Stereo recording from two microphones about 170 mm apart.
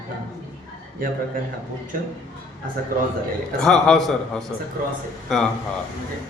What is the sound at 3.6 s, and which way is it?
A man's voice, 5° left (ahead or behind).